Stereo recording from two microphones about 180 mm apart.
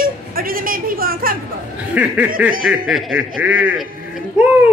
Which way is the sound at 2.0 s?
10° right (ahead or behind).